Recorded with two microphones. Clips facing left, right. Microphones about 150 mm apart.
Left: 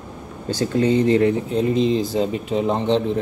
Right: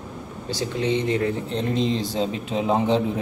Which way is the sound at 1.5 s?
5° left (ahead or behind).